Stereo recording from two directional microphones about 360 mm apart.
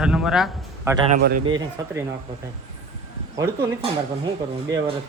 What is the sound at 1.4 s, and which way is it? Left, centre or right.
Speech, centre.